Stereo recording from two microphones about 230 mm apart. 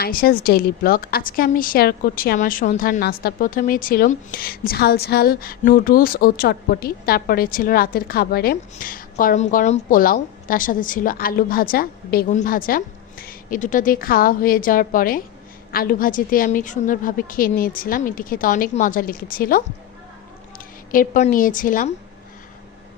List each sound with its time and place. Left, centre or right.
0.0 s a woman's voice: left
20.9 s a woman's voice: left